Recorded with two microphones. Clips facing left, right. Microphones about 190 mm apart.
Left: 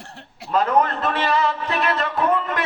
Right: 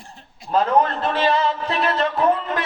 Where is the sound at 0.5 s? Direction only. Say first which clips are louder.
Right 1 dB; 30° right (ahead or behind).